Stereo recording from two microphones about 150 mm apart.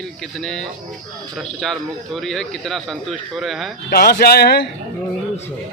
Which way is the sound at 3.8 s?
90° left.